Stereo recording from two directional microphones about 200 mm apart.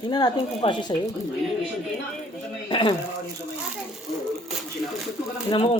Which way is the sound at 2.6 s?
25° left (ahead or behind).